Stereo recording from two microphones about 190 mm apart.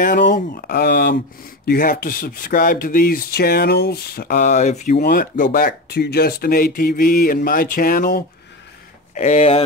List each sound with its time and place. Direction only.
0.0 s speech: 45° left (ahead or behind)
4.9 s speech: 50° left (ahead or behind)
9.1 s speech: 35° left (ahead or behind)